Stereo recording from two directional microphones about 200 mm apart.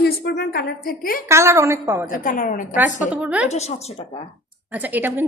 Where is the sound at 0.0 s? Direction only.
55° left (ahead or behind).